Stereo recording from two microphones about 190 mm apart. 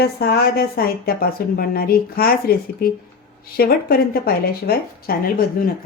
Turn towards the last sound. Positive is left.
turn(degrees=50)  # may be behind; listen again after turning